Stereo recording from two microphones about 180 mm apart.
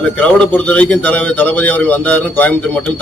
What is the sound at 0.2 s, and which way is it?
A man's voice, 10° left (ahead or behind).